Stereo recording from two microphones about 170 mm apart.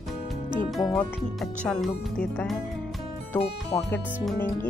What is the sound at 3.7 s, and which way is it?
Speech, 15° left (ahead or behind).